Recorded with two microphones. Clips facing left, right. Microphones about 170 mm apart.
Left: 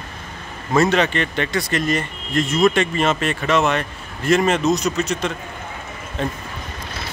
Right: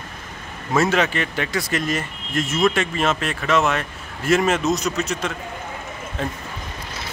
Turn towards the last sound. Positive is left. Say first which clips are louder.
# left 2 dB
turn(degrees=-5)  # may be behind; listen again after turning